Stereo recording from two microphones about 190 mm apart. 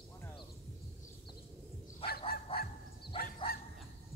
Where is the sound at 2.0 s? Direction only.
30° left (ahead or behind).